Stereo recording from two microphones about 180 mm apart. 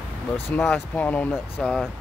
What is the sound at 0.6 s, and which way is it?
Speech, 5° left (ahead or behind).